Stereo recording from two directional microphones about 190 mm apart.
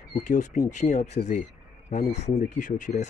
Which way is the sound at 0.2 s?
40° left (ahead or behind).